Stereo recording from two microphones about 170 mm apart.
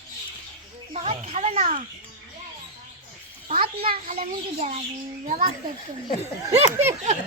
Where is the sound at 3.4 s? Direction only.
35° right (ahead or behind).